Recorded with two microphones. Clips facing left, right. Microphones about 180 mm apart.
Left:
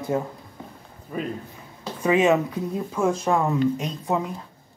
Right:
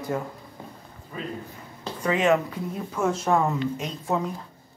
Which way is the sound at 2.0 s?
20° left (ahead or behind).